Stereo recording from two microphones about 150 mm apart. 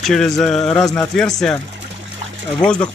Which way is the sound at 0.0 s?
5° left (ahead or behind).